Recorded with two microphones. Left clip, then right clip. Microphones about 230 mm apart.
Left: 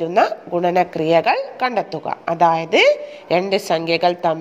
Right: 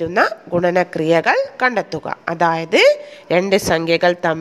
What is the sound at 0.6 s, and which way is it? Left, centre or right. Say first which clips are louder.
A woman's voice: right 1 dB; right.